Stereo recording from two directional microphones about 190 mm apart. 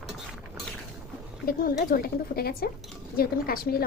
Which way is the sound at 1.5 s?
50° left (ahead or behind).